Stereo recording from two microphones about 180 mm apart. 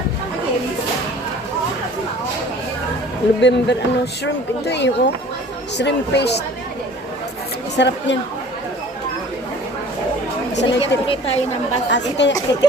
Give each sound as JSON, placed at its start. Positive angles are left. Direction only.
{"t": 3.4, "sound": "speech", "side_deg": 70}
{"t": 7.8, "sound": "a woman's voice", "side_deg": 80}
{"t": 10.8, "sound": "a woman's voice", "side_deg": 30}
{"t": 11.9, "sound": "speech", "side_deg": 75}
{"t": 12.5, "sound": "speech", "side_deg": 20}